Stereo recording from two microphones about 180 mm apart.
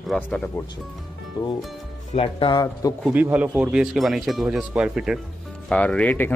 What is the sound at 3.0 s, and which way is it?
A man's voice, 10° right (ahead or behind).